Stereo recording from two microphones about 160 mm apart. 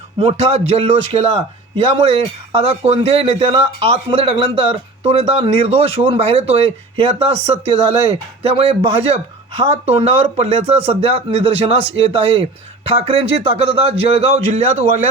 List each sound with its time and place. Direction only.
0.2 s a man's voice: 40° right (ahead or behind)